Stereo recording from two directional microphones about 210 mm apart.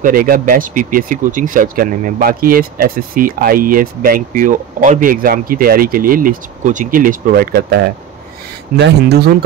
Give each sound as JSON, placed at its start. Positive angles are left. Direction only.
{"t": 0.0, "sound": "speech", "side_deg": -45}